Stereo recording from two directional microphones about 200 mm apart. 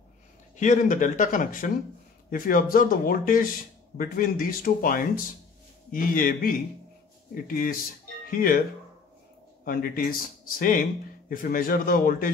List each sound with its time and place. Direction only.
0.6 s speech: 40° left (ahead or behind)
9.7 s speech: 45° left (ahead or behind)